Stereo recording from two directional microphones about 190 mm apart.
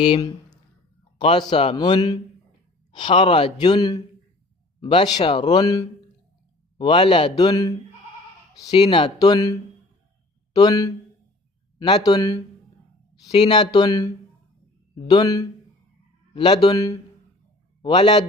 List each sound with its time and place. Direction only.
0.0 s a man's voice: 25° left (ahead or behind)
8.7 s a man's voice: 30° left (ahead or behind)